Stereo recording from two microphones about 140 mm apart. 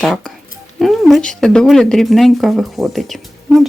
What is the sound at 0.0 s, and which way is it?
Speech, centre (ahead or behind).